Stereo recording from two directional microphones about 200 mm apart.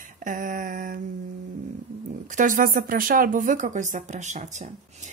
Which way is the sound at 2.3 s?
40° right (ahead or behind).